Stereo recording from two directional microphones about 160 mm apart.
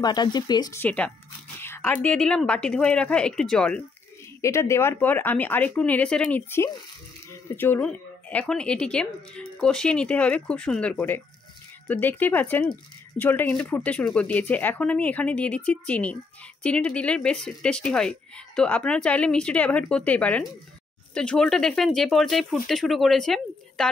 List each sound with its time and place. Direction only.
0.0 s speech: 25° left (ahead or behind)
0.7 s speech: 10° left (ahead or behind)
4.4 s speech: 15° left (ahead or behind)